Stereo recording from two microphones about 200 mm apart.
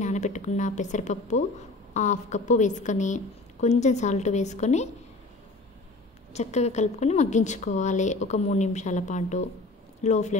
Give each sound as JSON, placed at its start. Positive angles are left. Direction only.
{"t": 0.0, "sound": "a woman's voice", "side_deg": 35}
{"t": 6.3, "sound": "a woman's voice", "side_deg": 35}